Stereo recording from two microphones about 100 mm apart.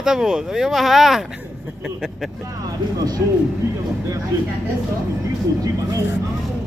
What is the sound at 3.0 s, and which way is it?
Speech, 40° right (ahead or behind).